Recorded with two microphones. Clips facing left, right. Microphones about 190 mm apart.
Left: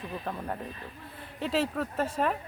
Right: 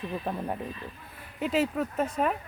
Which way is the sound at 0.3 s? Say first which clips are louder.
Right 2 dB; 15° right (ahead or behind).